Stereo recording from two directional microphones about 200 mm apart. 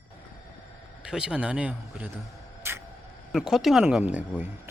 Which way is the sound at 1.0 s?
5° right (ahead or behind).